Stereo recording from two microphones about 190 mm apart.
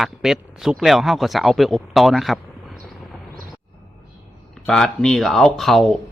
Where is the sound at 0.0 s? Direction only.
Centre (ahead or behind).